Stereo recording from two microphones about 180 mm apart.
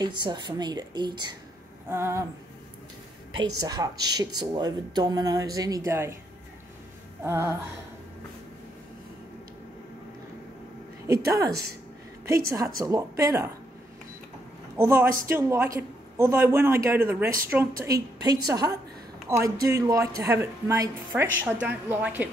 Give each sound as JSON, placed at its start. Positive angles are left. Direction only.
{"t": 0.0, "sound": "speech", "side_deg": -25}
{"t": 1.9, "sound": "a woman's voice", "side_deg": -15}
{"t": 3.3, "sound": "speech", "side_deg": -20}
{"t": 7.2, "sound": "a woman's voice", "side_deg": -15}
{"t": 11.1, "sound": "speech", "side_deg": -20}
{"t": 12.5, "sound": "speech", "side_deg": -20}
{"t": 14.8, "sound": "a woman's voice", "side_deg": -15}